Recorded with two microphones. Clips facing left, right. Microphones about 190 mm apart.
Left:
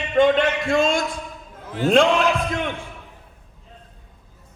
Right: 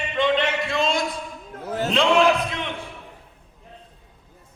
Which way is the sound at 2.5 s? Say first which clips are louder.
Left 5 dB; 50° left (ahead or behind).